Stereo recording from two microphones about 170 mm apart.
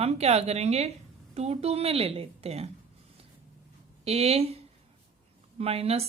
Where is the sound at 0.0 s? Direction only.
40° right (ahead or behind).